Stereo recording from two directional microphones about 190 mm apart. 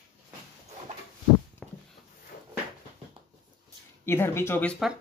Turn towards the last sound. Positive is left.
turn(degrees=0)  # may be behind; listen again after turning